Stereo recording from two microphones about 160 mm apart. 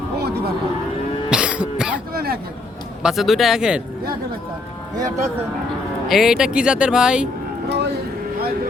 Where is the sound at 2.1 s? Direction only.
70° right (ahead or behind).